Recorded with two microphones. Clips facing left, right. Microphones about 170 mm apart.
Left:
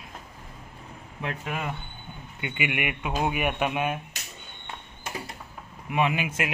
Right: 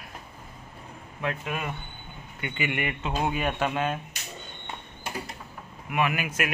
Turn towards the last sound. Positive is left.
turn(degrees=25)  # may be behind; listen again after turning